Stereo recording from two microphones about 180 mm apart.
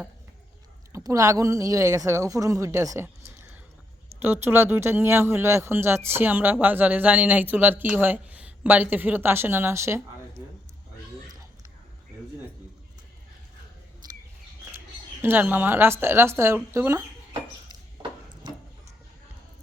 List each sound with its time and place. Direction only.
0.9 s speech: 20° right (ahead or behind)
14.0 s bird: 25° right (ahead or behind)
15.2 s speech: 10° right (ahead or behind)
18.4 s a sound: 25° right (ahead or behind)